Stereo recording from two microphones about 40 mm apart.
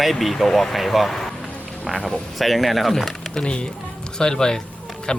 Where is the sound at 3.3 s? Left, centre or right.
Left.